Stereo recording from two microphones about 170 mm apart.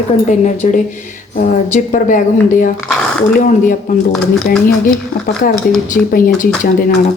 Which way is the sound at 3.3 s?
50° left (ahead or behind).